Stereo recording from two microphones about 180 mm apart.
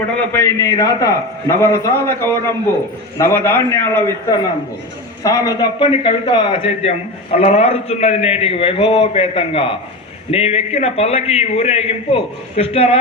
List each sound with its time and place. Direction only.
0.3 s a man's voice: 20° left (ahead or behind)